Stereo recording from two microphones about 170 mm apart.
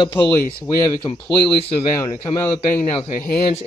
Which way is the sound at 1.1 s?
30° left (ahead or behind).